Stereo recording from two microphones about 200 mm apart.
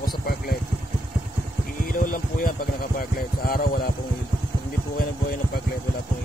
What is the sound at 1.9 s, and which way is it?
Speech, 45° left (ahead or behind).